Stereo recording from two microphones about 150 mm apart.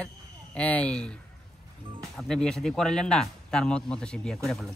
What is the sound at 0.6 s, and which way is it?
Speech, 10° left (ahead or behind).